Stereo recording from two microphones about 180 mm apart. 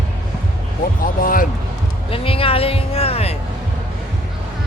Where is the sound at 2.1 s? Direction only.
30° left (ahead or behind).